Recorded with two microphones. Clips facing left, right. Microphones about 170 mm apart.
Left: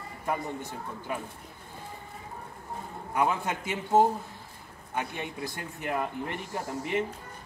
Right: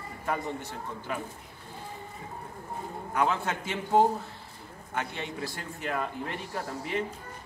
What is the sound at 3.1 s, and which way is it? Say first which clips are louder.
Speech: even; 15° left (ahead or behind).